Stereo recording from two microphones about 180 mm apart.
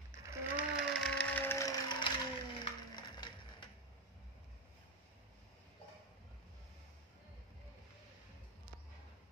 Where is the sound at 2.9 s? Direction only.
25° left (ahead or behind).